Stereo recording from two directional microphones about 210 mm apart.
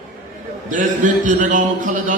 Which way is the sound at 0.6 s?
40° right (ahead or behind).